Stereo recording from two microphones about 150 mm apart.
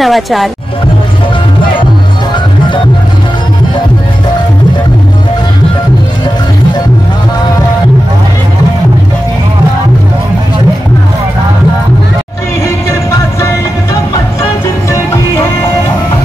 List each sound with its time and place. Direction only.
0.0 s speech: centre (ahead or behind)
14.9 s music: 20° left (ahead or behind)